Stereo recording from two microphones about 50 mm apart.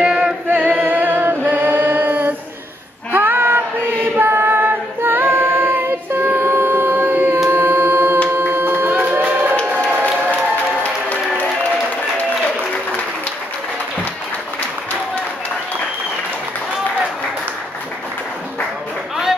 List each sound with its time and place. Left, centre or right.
0.0 s singing: centre
0.5 s music: right
3.1 s choir: right
7.5 s singing: right
8.3 s music: right
10.8 s music: left